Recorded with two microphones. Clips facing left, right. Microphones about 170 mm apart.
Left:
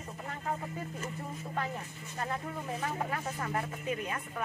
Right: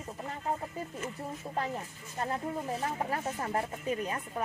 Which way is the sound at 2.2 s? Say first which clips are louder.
Right 3 dB; 30° right (ahead or behind).